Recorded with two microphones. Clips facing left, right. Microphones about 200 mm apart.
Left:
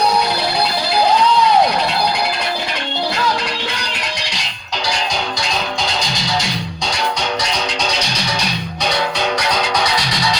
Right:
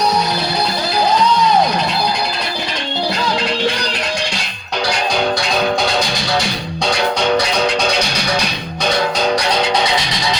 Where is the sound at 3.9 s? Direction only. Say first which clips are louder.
Right 5 dB; 50° right (ahead or behind).